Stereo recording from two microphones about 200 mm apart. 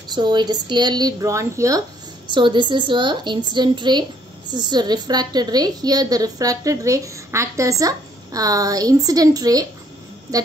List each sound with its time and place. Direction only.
0.1 s a woman's voice: 20° right (ahead or behind)